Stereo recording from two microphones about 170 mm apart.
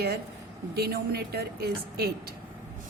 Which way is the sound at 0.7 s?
65° right (ahead or behind).